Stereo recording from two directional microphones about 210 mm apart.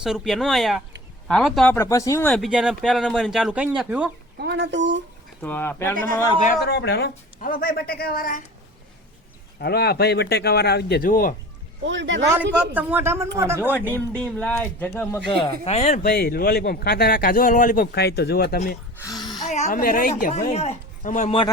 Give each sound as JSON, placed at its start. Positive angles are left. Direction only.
{"t": 0.0, "sound": "speech", "side_deg": 0}
{"t": 1.8, "sound": "speech", "side_deg": 15}
{"t": 2.3, "sound": "speech", "side_deg": 0}
{"t": 4.4, "sound": "speech", "side_deg": -55}
{"t": 5.4, "sound": "speech", "side_deg": 10}
{"t": 6.4, "sound": "speech", "side_deg": 45}
{"t": 9.6, "sound": "speech", "side_deg": 50}
{"t": 11.8, "sound": "speech", "side_deg": -60}
{"t": 12.3, "sound": "speech", "side_deg": -10}
{"t": 13.7, "sound": "speech", "side_deg": 10}
{"t": 15.6, "sound": "a woman's voice", "side_deg": 30}
{"t": 16.1, "sound": "speech", "side_deg": 45}
{"t": 18.9, "sound": "a sound", "side_deg": 15}
{"t": 19.5, "sound": "a woman's voice", "side_deg": 30}